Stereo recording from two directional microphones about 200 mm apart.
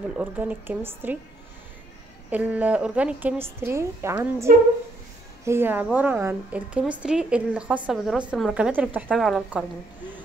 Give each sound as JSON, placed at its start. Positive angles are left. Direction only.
{"t": 0.2, "sound": "a woman's voice", "side_deg": -10}
{"t": 2.3, "sound": "a woman's voice", "side_deg": -5}